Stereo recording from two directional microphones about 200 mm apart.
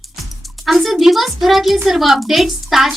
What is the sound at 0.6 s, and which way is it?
Speech, centre (ahead or behind).